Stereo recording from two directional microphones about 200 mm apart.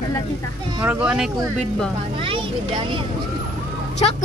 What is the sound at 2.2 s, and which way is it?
Speech, 25° right (ahead or behind).